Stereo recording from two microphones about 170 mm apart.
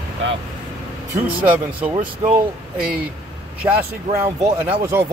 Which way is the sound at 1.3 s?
10° right (ahead or behind).